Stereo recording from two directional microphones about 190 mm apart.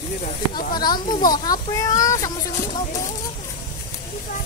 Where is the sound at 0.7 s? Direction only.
20° left (ahead or behind).